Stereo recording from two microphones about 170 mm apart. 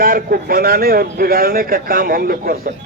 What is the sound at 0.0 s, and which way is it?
A man's voice, 60° right (ahead or behind).